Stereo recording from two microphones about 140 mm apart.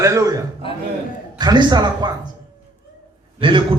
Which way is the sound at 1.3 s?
30° right (ahead or behind).